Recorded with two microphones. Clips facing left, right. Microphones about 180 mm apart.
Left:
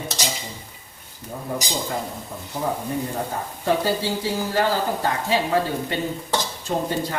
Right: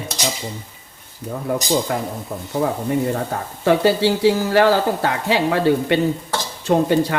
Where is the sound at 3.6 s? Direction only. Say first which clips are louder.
Right 7 dB; 75° right (ahead or behind).